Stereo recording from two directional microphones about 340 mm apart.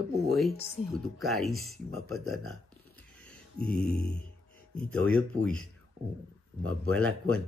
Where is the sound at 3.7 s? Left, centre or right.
Centre.